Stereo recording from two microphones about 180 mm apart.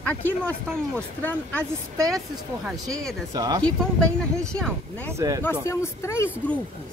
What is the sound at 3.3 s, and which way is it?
Speech, 20° right (ahead or behind).